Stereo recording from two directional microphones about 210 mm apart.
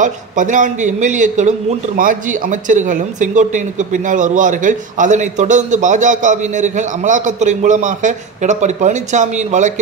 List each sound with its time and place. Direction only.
0.0 s a man's voice: 35° right (ahead or behind)